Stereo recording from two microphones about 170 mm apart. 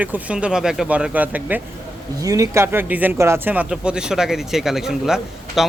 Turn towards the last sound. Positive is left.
turn(degrees=-5)  # may be behind; listen again after turning